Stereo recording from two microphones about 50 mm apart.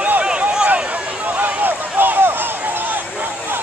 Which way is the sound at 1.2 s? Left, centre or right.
Right.